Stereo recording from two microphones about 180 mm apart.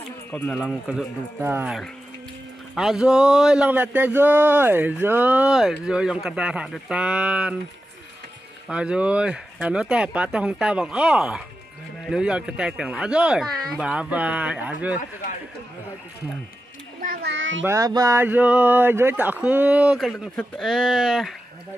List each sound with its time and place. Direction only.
0.3 s speech: 5° left (ahead or behind)
8.6 s speech: 5° right (ahead or behind)
17.0 s a child's voice: 55° right (ahead or behind)
17.3 s a child's voice: 90° right
17.6 s speech: 20° right (ahead or behind); by 21.4 s centre (ahead or behind)